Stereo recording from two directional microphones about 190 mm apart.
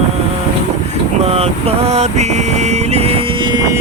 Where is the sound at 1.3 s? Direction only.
30° right (ahead or behind).